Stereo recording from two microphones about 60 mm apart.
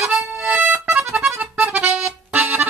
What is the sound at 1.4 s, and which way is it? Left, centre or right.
Accordion, right.